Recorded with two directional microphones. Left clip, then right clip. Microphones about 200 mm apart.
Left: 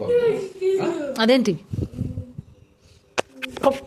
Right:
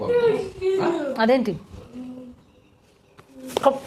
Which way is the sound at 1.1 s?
40° left (ahead or behind).